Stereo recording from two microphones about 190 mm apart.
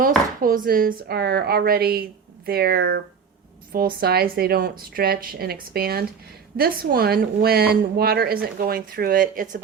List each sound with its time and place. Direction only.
0.4 s speech: 50° right (ahead or behind)